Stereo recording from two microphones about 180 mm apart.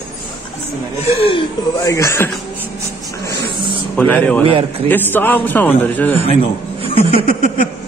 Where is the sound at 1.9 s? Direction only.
15° left (ahead or behind).